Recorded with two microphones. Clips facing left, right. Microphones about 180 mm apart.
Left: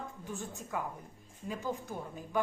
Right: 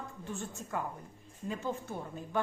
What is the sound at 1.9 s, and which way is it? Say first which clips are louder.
Speech: even; 5° left (ahead or behind).